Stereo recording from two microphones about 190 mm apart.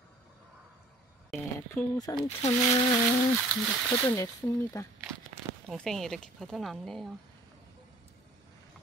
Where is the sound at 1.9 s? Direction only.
20° left (ahead or behind).